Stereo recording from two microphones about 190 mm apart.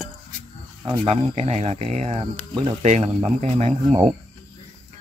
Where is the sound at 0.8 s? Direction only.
30° right (ahead or behind).